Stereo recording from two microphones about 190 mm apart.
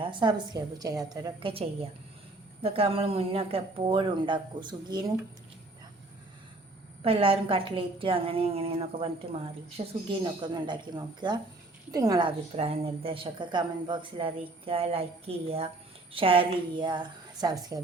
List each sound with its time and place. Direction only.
0.0 s speech: 25° right (ahead or behind)
7.0 s speech: 30° right (ahead or behind)
12.5 s speech: 30° right (ahead or behind)